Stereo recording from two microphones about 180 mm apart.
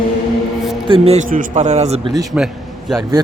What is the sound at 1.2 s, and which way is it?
Speech, 50° right (ahead or behind).